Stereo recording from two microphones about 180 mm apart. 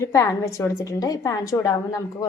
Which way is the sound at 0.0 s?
15° left (ahead or behind).